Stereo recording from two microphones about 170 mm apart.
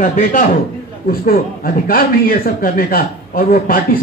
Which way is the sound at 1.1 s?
60° left (ahead or behind).